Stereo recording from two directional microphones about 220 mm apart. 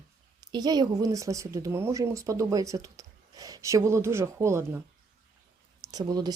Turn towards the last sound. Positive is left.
turn(degrees=-15)  # may be behind; listen again after turning